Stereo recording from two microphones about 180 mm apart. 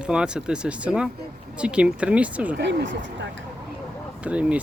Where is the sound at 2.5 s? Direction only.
80° right.